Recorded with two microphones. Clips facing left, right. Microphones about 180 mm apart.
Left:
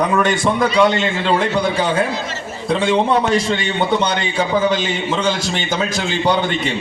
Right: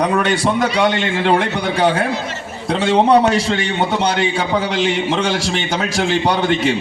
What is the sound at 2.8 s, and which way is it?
A man's voice, 70° right (ahead or behind).